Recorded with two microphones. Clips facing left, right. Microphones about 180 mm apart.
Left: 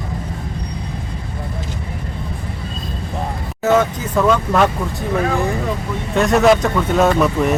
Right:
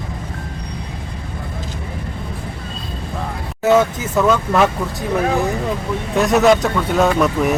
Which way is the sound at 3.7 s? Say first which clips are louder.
Right 1 dB; 5° right (ahead or behind).